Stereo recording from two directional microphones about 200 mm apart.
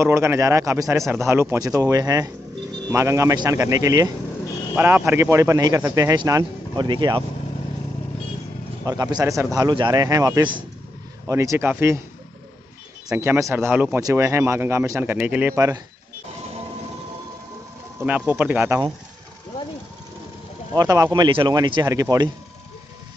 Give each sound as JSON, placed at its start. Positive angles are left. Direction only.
{"t": 0.0, "sound": "speech", "side_deg": -15}
{"t": 8.8, "sound": "speech", "side_deg": -20}
{"t": 13.1, "sound": "speech", "side_deg": -10}
{"t": 18.0, "sound": "speech", "side_deg": -5}
{"t": 20.7, "sound": "speech", "side_deg": -15}